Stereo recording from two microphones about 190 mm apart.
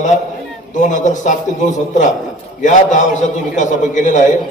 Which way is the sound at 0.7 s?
40° left (ahead or behind).